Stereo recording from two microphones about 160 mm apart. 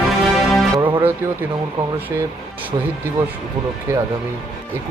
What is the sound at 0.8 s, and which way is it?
Music, 30° right (ahead or behind).